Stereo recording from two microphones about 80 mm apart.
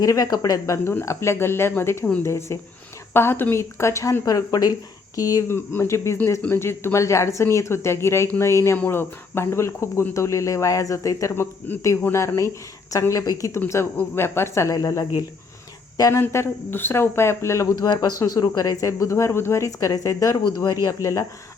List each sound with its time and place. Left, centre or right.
0.0 s speech: left
0.9 s speech: left
5.5 s speech: left
11.7 s speech: left
12.9 s speech: left
13.9 s speech: left
16.2 s speech: left
17.7 s speech: left
20.3 s speech: left
20.8 s speech: left